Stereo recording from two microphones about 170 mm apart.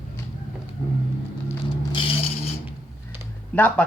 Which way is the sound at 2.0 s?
30° left (ahead or behind).